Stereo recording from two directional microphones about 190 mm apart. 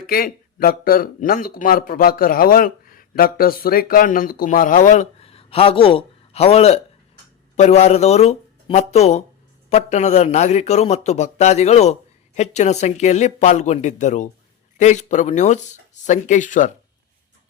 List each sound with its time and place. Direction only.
0.1 s a man's voice: 50° left (ahead or behind)